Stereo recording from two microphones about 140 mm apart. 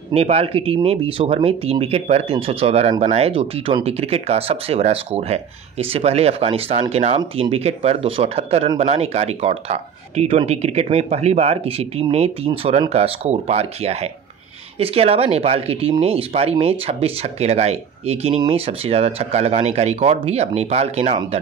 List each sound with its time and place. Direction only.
0.1 s speech: 45° right (ahead or behind)